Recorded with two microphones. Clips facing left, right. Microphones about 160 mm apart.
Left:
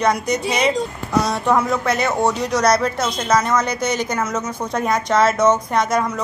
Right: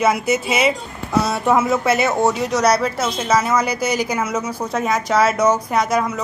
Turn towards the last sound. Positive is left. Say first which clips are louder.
# even
turn(degrees=-5)  # may be behind; listen again after turning